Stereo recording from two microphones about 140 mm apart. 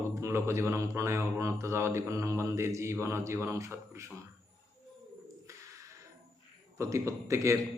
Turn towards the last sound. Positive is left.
turn(degrees=-20)  # may be behind; listen again after turning